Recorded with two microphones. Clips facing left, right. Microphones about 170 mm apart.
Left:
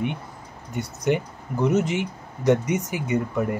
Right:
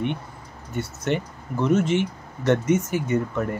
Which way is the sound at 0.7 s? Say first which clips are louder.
Left 2 dB; 15° left (ahead or behind).